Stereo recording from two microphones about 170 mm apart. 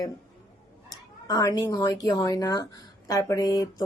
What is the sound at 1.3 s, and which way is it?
Speech, 20° left (ahead or behind).